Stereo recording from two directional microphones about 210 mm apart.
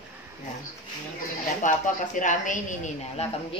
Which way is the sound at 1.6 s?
35° left (ahead or behind).